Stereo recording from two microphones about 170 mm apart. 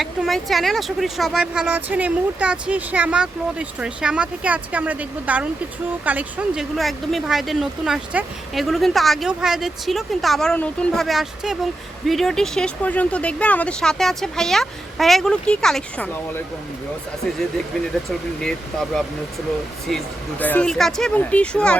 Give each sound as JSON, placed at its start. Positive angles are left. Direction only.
{"t": 0.0, "sound": "speech", "side_deg": 0}
{"t": 18.3, "sound": "speech", "side_deg": 5}